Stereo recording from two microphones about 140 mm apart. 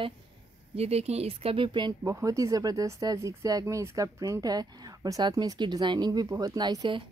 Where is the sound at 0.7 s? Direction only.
50° right (ahead or behind); by 7.0 s 30° right (ahead or behind).